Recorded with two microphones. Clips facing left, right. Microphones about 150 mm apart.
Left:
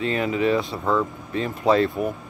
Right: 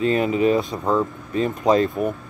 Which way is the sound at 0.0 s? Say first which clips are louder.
Right 4 dB; 35° right (ahead or behind).